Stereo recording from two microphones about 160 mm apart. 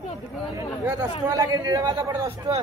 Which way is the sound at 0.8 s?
20° right (ahead or behind).